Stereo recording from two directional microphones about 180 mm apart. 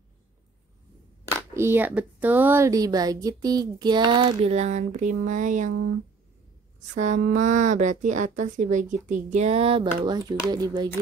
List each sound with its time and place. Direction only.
1.5 s a woman's voice: 15° right (ahead or behind); by 5.8 s 45° right (ahead or behind)
6.9 s a woman's voice: 45° right (ahead or behind); by 10.9 s 25° right (ahead or behind)